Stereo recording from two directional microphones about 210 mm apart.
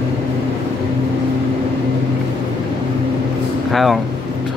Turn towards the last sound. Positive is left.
turn(degrees=0)  # may be behind; listen again after turning